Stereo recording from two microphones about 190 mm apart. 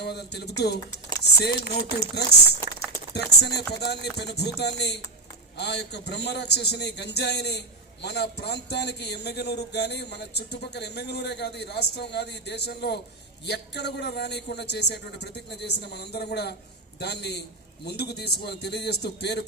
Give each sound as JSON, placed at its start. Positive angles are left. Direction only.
{"t": 0.0, "sound": "speech", "side_deg": 60}